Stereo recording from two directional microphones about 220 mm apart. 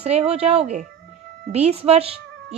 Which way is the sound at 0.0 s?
30° right (ahead or behind).